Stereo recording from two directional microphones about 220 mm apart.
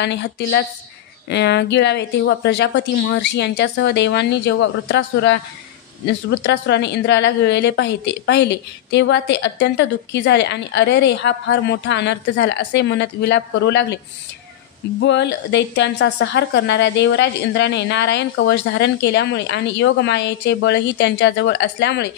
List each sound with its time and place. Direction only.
0.0 s speech: 50° left (ahead or behind)
15.0 s speech: 55° left (ahead or behind)